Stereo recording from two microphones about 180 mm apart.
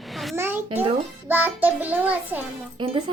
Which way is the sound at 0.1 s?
Centre (ahead or behind).